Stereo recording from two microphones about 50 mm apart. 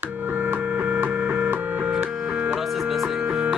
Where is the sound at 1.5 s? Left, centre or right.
Right.